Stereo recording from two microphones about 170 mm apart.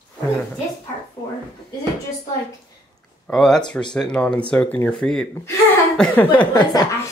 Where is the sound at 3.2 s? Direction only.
5° left (ahead or behind).